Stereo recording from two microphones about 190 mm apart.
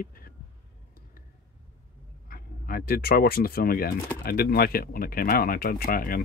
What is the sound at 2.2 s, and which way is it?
Speech, 50° left (ahead or behind).